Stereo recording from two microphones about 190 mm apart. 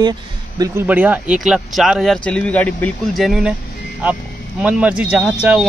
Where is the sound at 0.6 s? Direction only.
10° right (ahead or behind).